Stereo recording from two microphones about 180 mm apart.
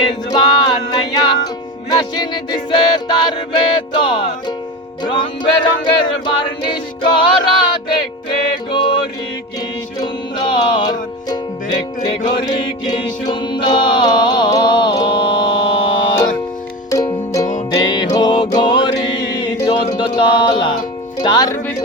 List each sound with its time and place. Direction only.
0.1 s music: 25° left (ahead or behind)
8.7 s music: 25° left (ahead or behind)
12.0 s choir: 25° left (ahead or behind)
16.9 s music: 20° left (ahead or behind)